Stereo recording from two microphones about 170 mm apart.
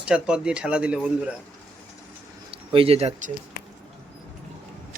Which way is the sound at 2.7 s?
35° right (ahead or behind).